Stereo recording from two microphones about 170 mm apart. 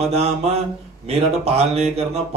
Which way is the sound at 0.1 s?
40° right (ahead or behind).